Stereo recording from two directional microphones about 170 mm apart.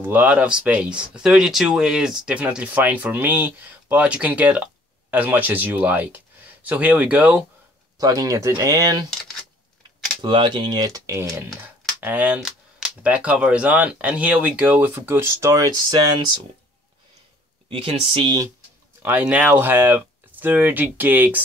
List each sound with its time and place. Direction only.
0.0 s speech: 10° right (ahead or behind)
8.0 s speech: 20° right (ahead or behind)
10.2 s speech: 30° right (ahead or behind)
17.6 s speech: 35° right (ahead or behind)
19.0 s speech: 10° right (ahead or behind)